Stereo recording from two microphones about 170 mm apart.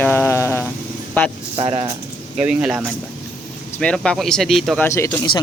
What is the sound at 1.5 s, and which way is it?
Speech, 35° right (ahead or behind).